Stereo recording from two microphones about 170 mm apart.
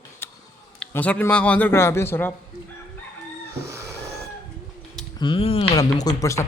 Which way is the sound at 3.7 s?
15° right (ahead or behind).